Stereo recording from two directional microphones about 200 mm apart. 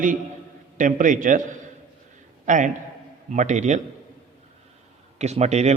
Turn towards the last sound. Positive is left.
turn(degrees=-35)  # may be behind; listen again after turning